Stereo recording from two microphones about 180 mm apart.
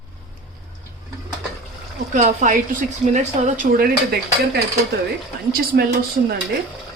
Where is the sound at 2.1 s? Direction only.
45° right (ahead or behind).